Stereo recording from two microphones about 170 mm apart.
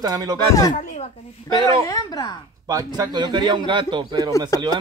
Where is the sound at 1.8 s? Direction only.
20° left (ahead or behind).